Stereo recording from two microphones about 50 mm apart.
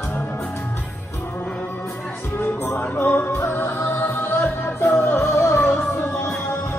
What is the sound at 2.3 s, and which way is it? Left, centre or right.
Music, left.